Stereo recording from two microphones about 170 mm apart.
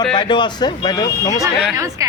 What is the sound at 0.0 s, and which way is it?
A man's voice, 25° left (ahead or behind).